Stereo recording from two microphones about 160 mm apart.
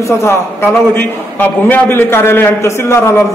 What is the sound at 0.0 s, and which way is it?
A man's voice, 15° left (ahead or behind).